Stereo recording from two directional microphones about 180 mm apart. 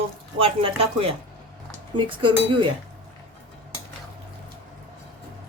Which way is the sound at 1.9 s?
25° right (ahead or behind).